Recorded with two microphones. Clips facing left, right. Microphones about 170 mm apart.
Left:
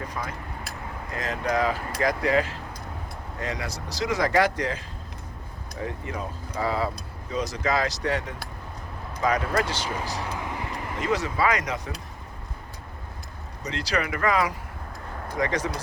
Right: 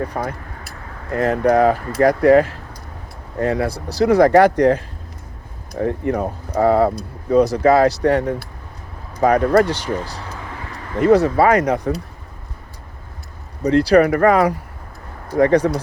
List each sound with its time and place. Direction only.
0.1 s speech: 55° right (ahead or behind)
5.8 s speech: 55° right (ahead or behind)
10.2 s vehicle: 15° left (ahead or behind)
10.9 s speech: 55° right (ahead or behind)
13.6 s speech: 55° right (ahead or behind)